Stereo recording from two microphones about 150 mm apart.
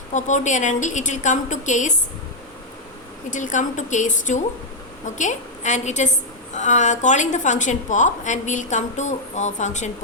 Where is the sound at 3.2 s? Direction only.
60° left (ahead or behind).